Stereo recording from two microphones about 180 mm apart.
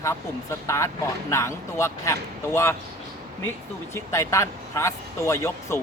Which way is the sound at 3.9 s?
15° left (ahead or behind).